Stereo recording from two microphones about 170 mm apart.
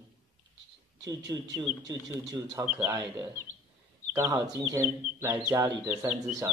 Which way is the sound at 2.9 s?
15° right (ahead or behind).